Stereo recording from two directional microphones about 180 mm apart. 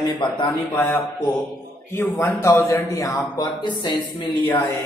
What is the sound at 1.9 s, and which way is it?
A man's voice, 15° left (ahead or behind).